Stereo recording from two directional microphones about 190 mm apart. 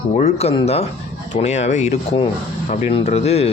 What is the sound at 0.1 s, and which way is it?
Speech, 35° left (ahead or behind).